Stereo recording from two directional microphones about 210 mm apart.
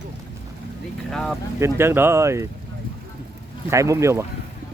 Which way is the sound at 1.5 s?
10° right (ahead or behind).